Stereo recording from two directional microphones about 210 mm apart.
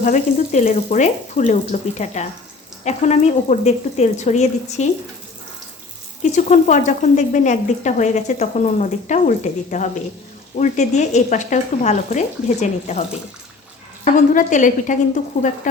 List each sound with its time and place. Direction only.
0.0 s speech: 35° left (ahead or behind)
6.3 s speech: 35° left (ahead or behind)